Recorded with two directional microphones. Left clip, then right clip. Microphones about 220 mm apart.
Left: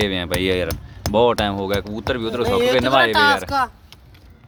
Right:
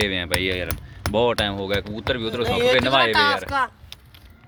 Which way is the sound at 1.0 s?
5° left (ahead or behind).